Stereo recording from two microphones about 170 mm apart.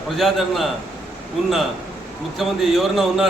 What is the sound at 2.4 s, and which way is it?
Speech, centre (ahead or behind).